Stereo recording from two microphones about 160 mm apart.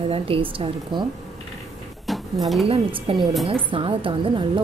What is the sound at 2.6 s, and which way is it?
A woman's voice, 35° right (ahead or behind).